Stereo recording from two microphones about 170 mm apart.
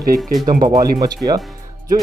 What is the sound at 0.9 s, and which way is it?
Speech, 20° right (ahead or behind).